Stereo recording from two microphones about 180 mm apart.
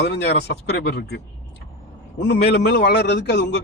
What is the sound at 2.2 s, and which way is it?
Speech, 70° left (ahead or behind).